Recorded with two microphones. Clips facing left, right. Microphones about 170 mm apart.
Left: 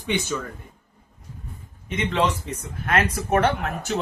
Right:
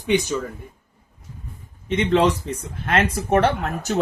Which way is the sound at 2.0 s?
40° right (ahead or behind).